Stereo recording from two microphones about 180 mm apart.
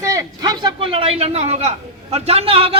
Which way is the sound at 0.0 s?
20° right (ahead or behind).